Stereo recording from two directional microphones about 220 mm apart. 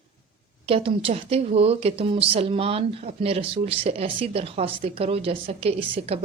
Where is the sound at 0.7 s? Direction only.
25° right (ahead or behind).